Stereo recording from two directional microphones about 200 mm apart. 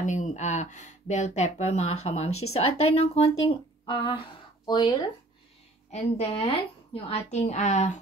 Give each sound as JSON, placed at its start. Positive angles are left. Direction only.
{"t": 0.0, "sound": "speech", "side_deg": 40}